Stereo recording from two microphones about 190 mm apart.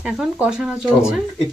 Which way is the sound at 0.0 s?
5° right (ahead or behind).